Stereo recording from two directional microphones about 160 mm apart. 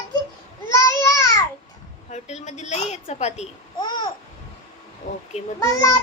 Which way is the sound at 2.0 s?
45° left (ahead or behind).